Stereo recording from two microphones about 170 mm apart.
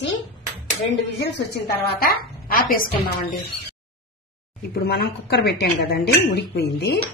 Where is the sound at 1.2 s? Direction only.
80° left; by 2.9 s 55° left (ahead or behind).